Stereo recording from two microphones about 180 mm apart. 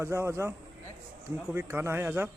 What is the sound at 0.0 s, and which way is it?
Speech, 15° right (ahead or behind).